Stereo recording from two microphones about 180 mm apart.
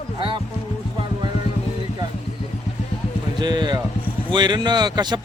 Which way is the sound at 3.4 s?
25° right (ahead or behind).